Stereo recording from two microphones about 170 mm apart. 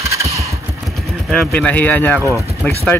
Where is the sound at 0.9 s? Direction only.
Centre (ahead or behind).